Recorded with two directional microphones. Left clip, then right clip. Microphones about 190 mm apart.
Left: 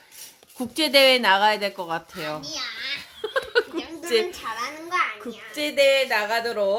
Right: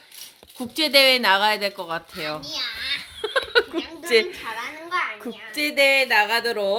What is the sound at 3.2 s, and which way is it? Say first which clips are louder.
Laughter: right 2 dB; 25° right (ahead or behind).